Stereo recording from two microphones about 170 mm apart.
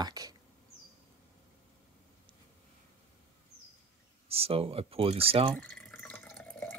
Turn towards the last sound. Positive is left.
turn(degrees=5)  # may be behind; listen again after turning